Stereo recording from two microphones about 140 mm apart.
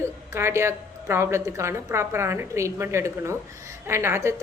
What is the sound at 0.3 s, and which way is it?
A woman's voice, 20° right (ahead or behind).